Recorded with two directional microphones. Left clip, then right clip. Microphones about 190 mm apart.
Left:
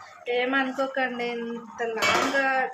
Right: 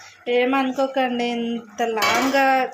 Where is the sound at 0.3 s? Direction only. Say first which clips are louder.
Right 5 dB; 25° right (ahead or behind).